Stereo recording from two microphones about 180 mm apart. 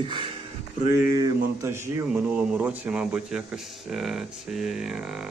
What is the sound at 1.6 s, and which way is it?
A man's voice, 15° right (ahead or behind).